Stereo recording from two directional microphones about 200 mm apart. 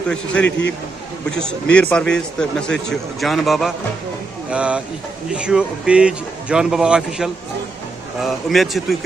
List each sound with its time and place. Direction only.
1.4 s a man's voice: 5° left (ahead or behind)